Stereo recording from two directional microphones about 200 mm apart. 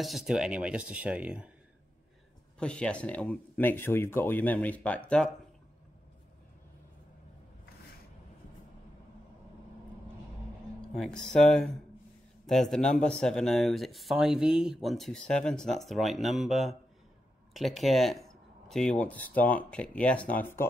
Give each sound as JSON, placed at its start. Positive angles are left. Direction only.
{"t": 0.0, "sound": "speech", "side_deg": 0}
{"t": 2.6, "sound": "speech", "side_deg": 5}
{"t": 10.8, "sound": "speech", "side_deg": 5}